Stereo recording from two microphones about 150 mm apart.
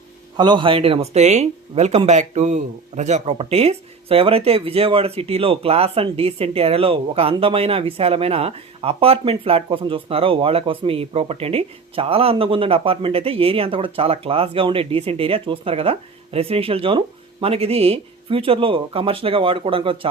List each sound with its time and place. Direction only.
0.3 s speech: 30° right (ahead or behind)